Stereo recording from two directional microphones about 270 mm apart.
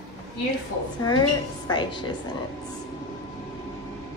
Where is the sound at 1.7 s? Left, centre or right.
Centre.